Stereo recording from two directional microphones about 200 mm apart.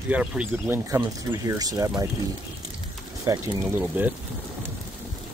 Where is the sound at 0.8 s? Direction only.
15° right (ahead or behind).